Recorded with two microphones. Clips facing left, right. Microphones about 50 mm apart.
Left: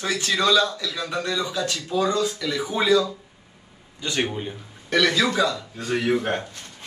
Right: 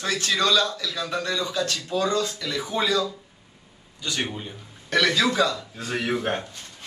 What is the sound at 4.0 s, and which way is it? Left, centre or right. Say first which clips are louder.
Speech: left 4 dB; left.